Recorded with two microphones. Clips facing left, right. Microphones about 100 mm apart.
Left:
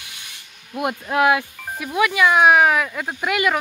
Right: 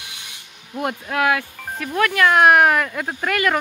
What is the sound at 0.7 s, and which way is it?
Speech, 15° left (ahead or behind).